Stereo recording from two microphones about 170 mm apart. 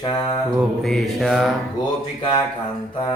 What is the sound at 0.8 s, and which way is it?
Mantra, centre (ahead or behind).